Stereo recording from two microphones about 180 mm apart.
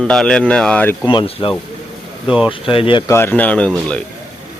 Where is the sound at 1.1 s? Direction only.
25° left (ahead or behind).